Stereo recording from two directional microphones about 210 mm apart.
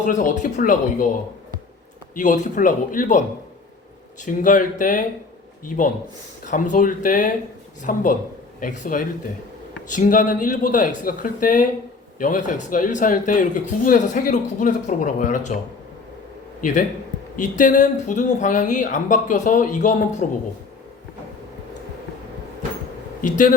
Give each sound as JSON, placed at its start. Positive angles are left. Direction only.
{"t": 0.0, "sound": "speech", "side_deg": 35}
{"t": 2.1, "sound": "speech", "side_deg": 35}
{"t": 16.6, "sound": "a man's voice", "side_deg": 40}
{"t": 23.2, "sound": "speech", "side_deg": 35}